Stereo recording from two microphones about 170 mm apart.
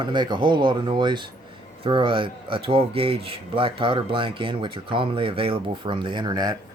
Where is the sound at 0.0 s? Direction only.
25° right (ahead or behind).